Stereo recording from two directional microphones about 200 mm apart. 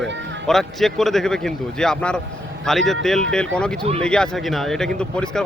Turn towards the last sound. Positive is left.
turn(degrees=5)  # may be behind; listen again after turning